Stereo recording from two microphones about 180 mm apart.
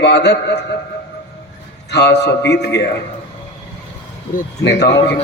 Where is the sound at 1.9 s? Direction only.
70° left (ahead or behind).